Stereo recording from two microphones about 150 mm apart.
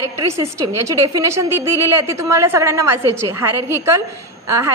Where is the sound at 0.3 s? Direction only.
20° right (ahead or behind).